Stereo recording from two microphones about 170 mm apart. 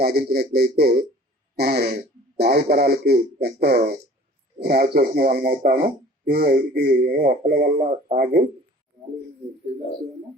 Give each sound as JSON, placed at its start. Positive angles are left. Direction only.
{"t": 0.0, "sound": "speech", "side_deg": -70}